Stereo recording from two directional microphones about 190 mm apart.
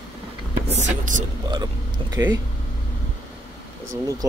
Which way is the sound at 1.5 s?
20° right (ahead or behind).